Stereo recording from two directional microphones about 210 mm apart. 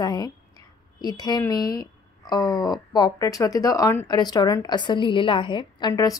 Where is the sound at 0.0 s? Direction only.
20° left (ahead or behind).